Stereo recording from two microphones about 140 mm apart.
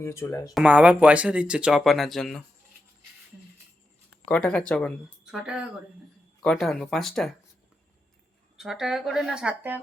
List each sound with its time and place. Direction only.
0.0 s speech: 20° left (ahead or behind)
0.5 s speech: 5° right (ahead or behind)
4.3 s speech: 5° left (ahead or behind)
5.2 s speech: 5° right (ahead or behind)
8.5 s speech: 5° right (ahead or behind)